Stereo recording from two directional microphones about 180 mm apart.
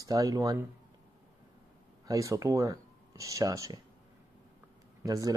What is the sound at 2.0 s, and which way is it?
Speech, 20° right (ahead or behind).